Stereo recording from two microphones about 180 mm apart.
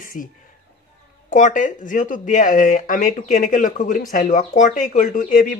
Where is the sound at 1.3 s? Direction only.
45° left (ahead or behind).